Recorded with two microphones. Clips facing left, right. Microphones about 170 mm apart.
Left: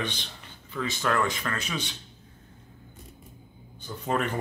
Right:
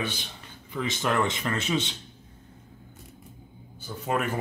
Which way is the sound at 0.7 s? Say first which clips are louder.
Right 1 dB; 20° right (ahead or behind).